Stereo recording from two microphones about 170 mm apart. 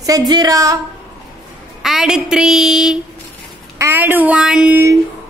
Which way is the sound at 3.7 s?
15° right (ahead or behind).